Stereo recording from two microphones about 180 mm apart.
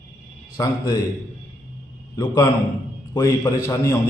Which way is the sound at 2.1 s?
25° left (ahead or behind).